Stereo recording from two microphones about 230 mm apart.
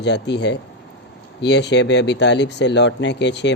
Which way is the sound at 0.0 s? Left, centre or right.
Left.